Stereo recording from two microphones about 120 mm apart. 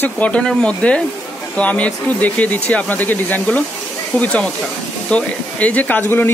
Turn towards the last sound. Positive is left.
turn(degrees=20)  # may be behind; listen again after turning